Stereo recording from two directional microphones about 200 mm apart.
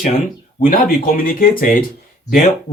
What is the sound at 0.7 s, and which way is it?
Speech, 45° left (ahead or behind).